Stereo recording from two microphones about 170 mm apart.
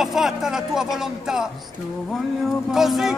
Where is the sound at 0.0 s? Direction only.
Centre (ahead or behind).